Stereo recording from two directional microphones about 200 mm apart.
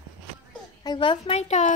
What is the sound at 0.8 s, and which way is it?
Speech, 25° left (ahead or behind).